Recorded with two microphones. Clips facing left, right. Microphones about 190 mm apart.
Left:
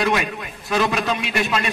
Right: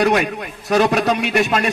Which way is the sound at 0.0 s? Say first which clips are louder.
Right 5 dB; 45° right (ahead or behind).